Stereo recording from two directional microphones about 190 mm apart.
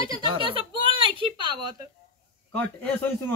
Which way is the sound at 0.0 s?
20° right (ahead or behind).